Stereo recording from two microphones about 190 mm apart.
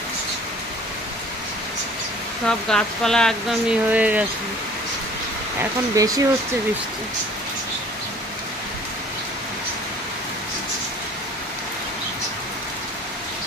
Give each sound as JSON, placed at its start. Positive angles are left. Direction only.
{"t": 2.5, "sound": "speech", "side_deg": 5}
{"t": 5.9, "sound": "speech", "side_deg": -20}